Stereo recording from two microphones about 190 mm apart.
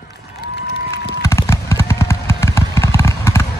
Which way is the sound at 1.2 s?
15° left (ahead or behind).